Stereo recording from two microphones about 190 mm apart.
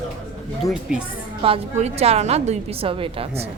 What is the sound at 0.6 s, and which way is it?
Speech, 20° left (ahead or behind).